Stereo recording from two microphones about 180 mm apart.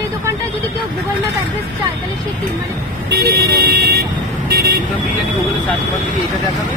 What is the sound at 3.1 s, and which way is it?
Vehicle, 60° right (ahead or behind).